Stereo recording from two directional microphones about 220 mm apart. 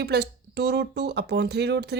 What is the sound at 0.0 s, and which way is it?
Speech, 45° right (ahead or behind).